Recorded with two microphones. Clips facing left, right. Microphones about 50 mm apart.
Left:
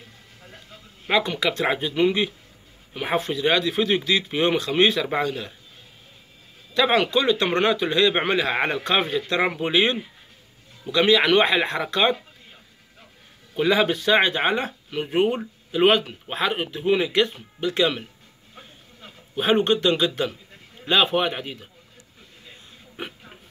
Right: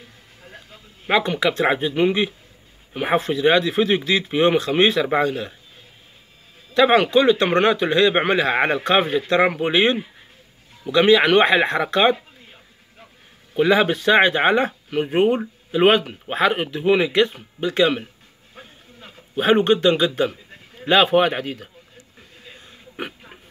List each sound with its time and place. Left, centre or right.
1.0 s a man's voice: right
6.7 s a man's voice: right
13.6 s a man's voice: right
16.4 s a man's voice: right
20.8 s speech: right
21.4 s speech: right
22.7 s a sound: right